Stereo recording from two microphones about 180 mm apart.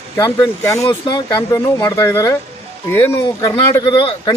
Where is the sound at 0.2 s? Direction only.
15° left (ahead or behind).